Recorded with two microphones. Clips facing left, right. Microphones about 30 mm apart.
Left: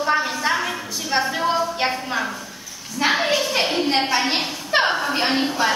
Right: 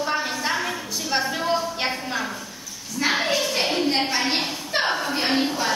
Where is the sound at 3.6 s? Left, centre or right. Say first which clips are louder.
Left 2 dB; centre.